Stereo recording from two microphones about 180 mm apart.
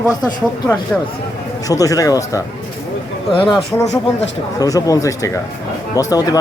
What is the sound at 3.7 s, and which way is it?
Speech, 15° left (ahead or behind).